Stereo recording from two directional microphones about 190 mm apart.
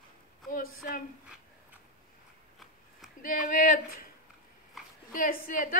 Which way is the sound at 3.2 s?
45° left (ahead or behind).